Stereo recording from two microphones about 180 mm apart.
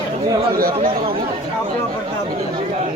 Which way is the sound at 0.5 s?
55° right (ahead or behind).